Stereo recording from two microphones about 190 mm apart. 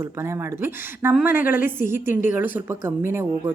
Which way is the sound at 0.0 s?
15° right (ahead or behind).